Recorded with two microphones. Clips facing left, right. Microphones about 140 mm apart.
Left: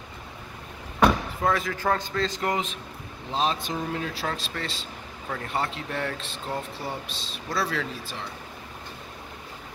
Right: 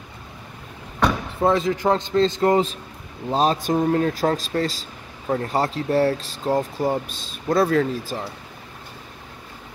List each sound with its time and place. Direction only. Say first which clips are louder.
1.4 s a man's voice: right 8 dB; 25° right (ahead or behind); by 8.3 s 45° right (ahead or behind)